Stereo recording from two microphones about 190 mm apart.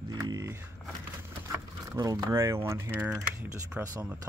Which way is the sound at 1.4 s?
15° right (ahead or behind).